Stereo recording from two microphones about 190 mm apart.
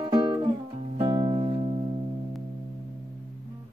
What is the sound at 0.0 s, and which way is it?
Music, 25° right (ahead or behind).